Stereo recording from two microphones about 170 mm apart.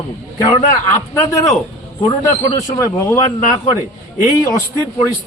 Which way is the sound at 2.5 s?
20° left (ahead or behind).